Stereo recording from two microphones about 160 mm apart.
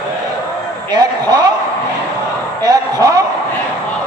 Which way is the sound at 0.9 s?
25° right (ahead or behind).